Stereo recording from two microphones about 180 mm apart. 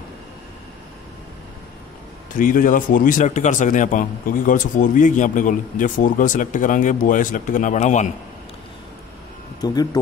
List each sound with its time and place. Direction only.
2.3 s a man's voice: 45° left (ahead or behind)
9.6 s a man's voice: 20° left (ahead or behind)